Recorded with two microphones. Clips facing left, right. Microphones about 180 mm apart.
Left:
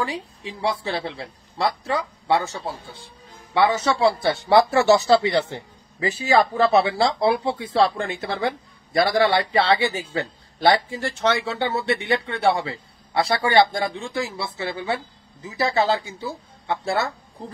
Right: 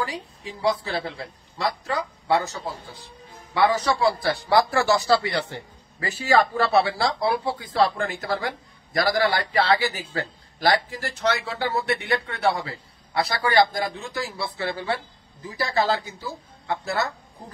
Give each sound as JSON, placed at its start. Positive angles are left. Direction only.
{"t": 0.1, "sound": "speech", "side_deg": 25}
{"t": 2.2, "sound": "speech", "side_deg": 30}